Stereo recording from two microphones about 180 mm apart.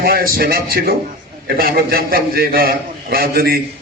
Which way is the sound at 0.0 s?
55° right (ahead or behind).